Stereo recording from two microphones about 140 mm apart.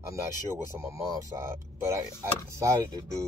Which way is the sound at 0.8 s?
20° right (ahead or behind).